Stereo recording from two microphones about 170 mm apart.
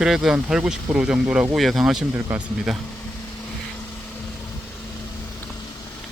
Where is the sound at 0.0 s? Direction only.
Centre (ahead or behind).